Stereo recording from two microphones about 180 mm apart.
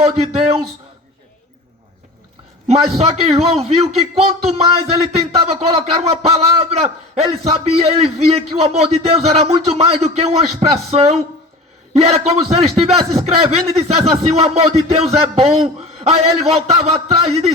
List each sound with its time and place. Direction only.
0.0 s speech: 35° right (ahead or behind)
3.0 s speech: 35° right (ahead or behind)